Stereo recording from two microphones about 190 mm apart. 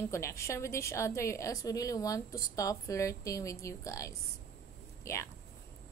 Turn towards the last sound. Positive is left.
turn(degrees=15)  # may be behind; listen again after turning